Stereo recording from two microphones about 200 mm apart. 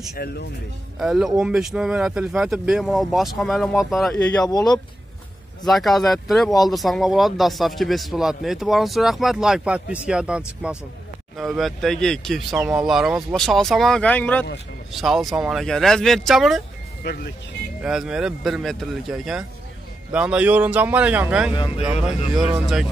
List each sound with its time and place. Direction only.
0.1 s speech: 55° left (ahead or behind)
0.9 s speech: centre (ahead or behind)
4.5 s speech: 20° left (ahead or behind)
5.7 s speech: centre (ahead or behind)
17.0 s speech: 50° left (ahead or behind)
17.8 s speech: 5° right (ahead or behind)
21.5 s speech: 25° left (ahead or behind)
22.3 s speech: 5° right (ahead or behind)